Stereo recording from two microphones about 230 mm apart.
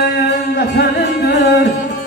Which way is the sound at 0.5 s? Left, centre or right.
Left.